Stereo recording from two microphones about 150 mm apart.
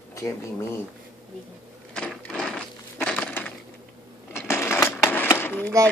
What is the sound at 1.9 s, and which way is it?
Crushing, 5° left (ahead or behind).